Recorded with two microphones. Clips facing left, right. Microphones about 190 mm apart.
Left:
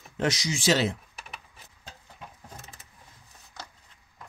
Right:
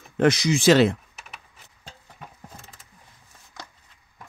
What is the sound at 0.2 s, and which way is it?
Speech, 55° right (ahead or behind).